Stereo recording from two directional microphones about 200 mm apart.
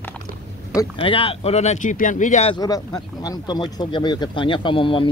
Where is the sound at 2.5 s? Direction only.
20° left (ahead or behind).